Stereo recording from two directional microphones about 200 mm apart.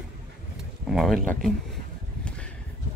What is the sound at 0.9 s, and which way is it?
Speech, centre (ahead or behind).